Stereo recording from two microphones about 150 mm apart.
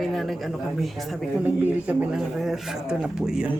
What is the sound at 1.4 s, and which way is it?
Speech, 10° right (ahead or behind).